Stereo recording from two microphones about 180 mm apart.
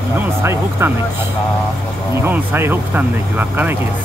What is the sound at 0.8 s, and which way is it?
Speech, 15° right (ahead or behind).